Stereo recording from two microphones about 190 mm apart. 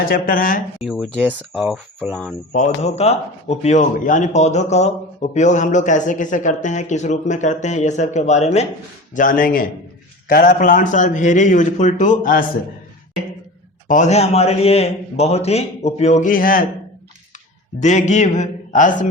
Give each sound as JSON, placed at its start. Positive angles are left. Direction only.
{"t": 0.0, "sound": "speech", "side_deg": 50}
{"t": 0.9, "sound": "speech", "side_deg": 0}
{"t": 2.5, "sound": "a man's voice", "side_deg": 40}
{"t": 13.8, "sound": "a man's voice", "side_deg": 40}
{"t": 17.7, "sound": "a man's voice", "side_deg": 40}